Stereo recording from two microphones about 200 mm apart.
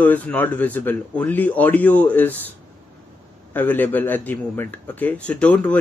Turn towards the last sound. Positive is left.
turn(degrees=5)  # may be behind; listen again after turning